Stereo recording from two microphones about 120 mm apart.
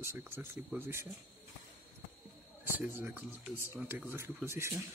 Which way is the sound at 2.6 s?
15° right (ahead or behind).